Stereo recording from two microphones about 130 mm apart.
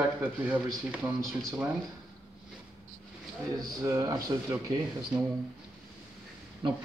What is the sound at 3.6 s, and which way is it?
Speech, 25° right (ahead or behind).